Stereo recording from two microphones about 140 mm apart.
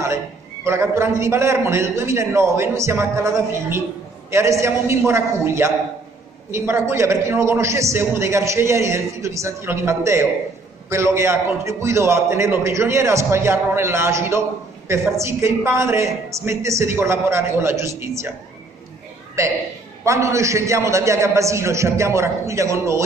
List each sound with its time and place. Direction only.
0.7 s a man's voice: 20° right (ahead or behind)
19.4 s a man's voice: 20° right (ahead or behind)